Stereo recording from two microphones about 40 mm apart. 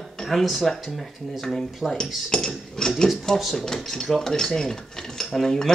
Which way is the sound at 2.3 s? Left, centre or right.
Centre.